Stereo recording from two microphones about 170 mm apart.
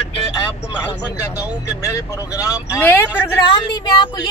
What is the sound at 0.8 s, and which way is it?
Speech, 20° left (ahead or behind).